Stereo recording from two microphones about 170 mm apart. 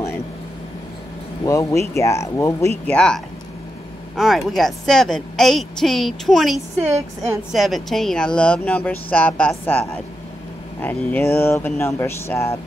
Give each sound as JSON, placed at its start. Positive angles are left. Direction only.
{"t": 1.4, "sound": "speech", "side_deg": 20}
{"t": 2.9, "sound": "a woman's voice", "side_deg": 5}
{"t": 4.2, "sound": "a woman's voice", "side_deg": 0}
{"t": 6.8, "sound": "speech", "side_deg": -15}
{"t": 7.5, "sound": "speech", "side_deg": 0}